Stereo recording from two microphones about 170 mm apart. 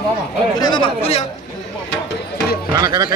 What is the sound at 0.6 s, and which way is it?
Speech, 25° left (ahead or behind).